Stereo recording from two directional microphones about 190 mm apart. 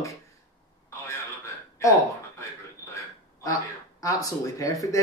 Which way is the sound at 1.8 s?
15° left (ahead or behind).